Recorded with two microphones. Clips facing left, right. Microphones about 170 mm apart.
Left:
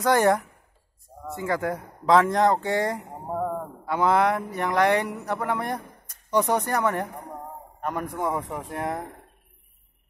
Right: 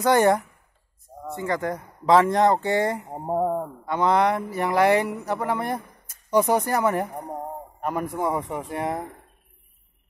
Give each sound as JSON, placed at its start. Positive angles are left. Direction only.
{"t": 0.0, "sound": "speech", "side_deg": 0}
{"t": 3.3, "sound": "a sound", "side_deg": -25}
{"t": 3.8, "sound": "speech", "side_deg": 5}